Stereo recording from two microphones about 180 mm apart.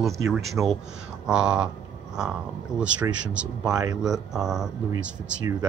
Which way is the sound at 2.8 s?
5° right (ahead or behind).